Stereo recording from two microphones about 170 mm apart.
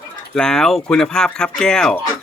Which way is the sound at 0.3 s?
5° left (ahead or behind).